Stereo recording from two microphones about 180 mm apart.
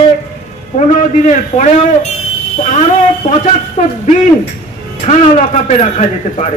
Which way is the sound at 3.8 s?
45° left (ahead or behind).